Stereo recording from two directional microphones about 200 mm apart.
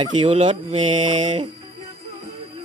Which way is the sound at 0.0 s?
25° right (ahead or behind).